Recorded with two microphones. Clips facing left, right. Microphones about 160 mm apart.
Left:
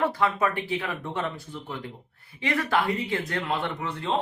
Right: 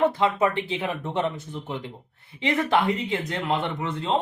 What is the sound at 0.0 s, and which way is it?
Speech, 20° right (ahead or behind).